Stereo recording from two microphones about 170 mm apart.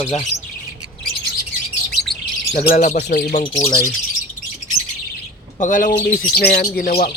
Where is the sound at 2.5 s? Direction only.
55° left (ahead or behind).